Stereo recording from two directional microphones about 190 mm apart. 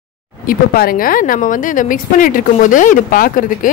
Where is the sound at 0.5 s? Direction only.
50° left (ahead or behind).